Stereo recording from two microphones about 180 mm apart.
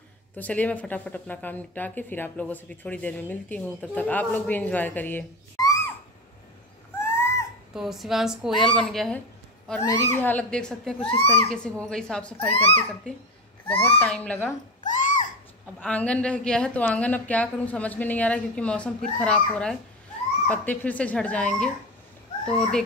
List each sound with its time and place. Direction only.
0.4 s speech: 10° left (ahead or behind)
7.0 s a sound: 15° left (ahead or behind)
7.7 s a woman's voice: centre (ahead or behind)
9.8 s speech: 15° left (ahead or behind)
11.1 s speech: 35° left (ahead or behind)
11.5 s a woman's voice: 5° left (ahead or behind)
12.5 s speech: 35° left (ahead or behind)
13.1 s speech: 5° left (ahead or behind)
14.8 s a sound: 45° left (ahead or behind)
15.8 s a woman's voice: 5° left (ahead or behind)